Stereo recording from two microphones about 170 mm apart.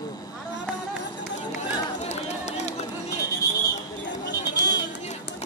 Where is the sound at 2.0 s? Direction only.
40° left (ahead or behind).